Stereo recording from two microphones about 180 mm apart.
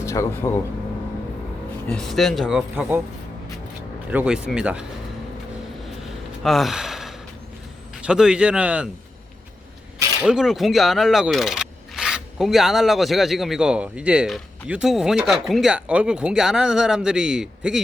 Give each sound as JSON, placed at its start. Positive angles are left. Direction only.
{"t": 0.0, "sound": "speech", "side_deg": 15}
{"t": 1.9, "sound": "speech", "side_deg": 0}
{"t": 4.1, "sound": "speech", "side_deg": -5}
{"t": 6.4, "sound": "gasp", "side_deg": 0}
{"t": 8.0, "sound": "speech", "side_deg": -5}
{"t": 10.2, "sound": "speech", "side_deg": -5}